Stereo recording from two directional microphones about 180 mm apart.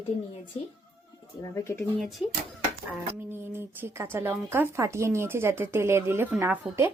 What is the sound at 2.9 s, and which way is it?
A child's voice, 10° right (ahead or behind).